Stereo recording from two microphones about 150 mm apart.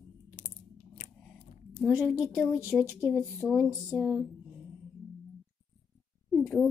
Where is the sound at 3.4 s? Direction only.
Centre (ahead or behind).